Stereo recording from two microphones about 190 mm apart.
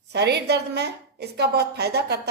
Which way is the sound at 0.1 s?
60° right (ahead or behind).